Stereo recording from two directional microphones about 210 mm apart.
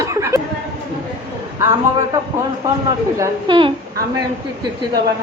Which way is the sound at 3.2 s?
25° right (ahead or behind).